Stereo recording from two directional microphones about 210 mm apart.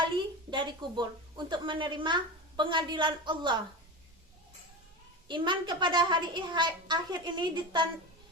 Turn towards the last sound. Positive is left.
turn(degrees=-20)  # may be behind; listen again after turning